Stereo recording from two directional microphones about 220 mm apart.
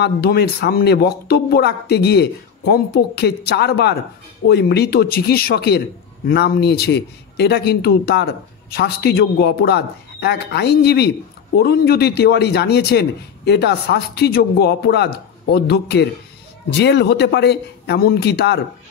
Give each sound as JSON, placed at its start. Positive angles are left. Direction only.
{"t": 0.0, "sound": "a man's voice", "side_deg": 45}